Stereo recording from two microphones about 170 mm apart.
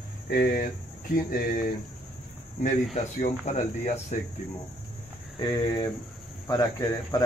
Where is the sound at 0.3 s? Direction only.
60° left (ahead or behind).